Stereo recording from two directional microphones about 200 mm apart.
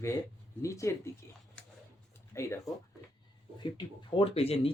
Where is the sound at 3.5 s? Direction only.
25° left (ahead or behind).